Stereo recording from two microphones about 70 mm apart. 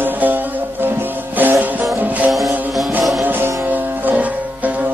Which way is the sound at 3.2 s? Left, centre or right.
Right.